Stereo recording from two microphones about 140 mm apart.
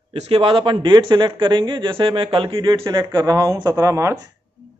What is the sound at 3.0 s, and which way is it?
Speech, 25° right (ahead or behind).